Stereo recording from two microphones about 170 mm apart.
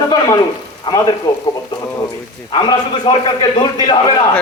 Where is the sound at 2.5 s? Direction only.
30° left (ahead or behind).